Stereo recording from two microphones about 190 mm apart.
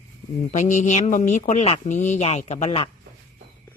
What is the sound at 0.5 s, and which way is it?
Speech, 40° left (ahead or behind).